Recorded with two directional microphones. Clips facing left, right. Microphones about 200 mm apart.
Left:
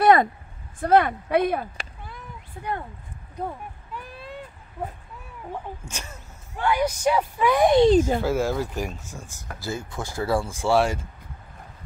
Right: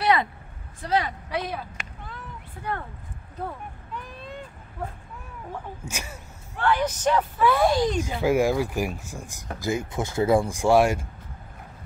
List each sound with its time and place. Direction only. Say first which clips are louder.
0.0 s a sound: left 6 dB; 50° left (ahead or behind)
0.7 s speech: left 7 dB; 55° left (ahead or behind)
2.0 s cat: right 1 dB; 15° left (ahead or behind)
3.3 s a sound: left 2 dB; 10° left (ahead or behind)
5.9 s speech: right 3 dB; 10° right (ahead or behind)
6.5 s speech: left 1 dB; 10° left (ahead or behind)
8.2 s speech: right 3 dB; 15° right (ahead or behind)